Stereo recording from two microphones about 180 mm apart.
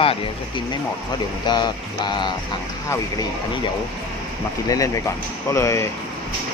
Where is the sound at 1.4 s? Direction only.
25° left (ahead or behind).